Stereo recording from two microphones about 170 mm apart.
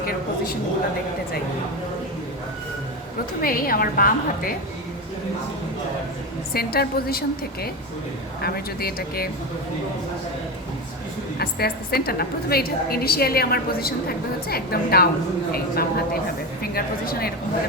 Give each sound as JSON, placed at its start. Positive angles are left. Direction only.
{"t": 0.0, "sound": "a woman's voice", "side_deg": 60}
{"t": 3.4, "sound": "a woman's voice", "side_deg": 55}
{"t": 6.5, "sound": "a woman's voice", "side_deg": 65}
{"t": 11.3, "sound": "a woman's voice", "side_deg": 65}